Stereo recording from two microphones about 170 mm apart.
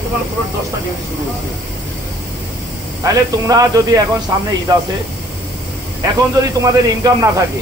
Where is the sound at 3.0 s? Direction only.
20° right (ahead or behind).